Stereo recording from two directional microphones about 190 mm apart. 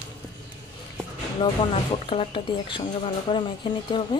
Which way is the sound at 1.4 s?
25° left (ahead or behind).